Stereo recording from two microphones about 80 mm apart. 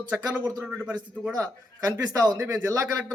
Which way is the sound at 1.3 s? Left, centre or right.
Right.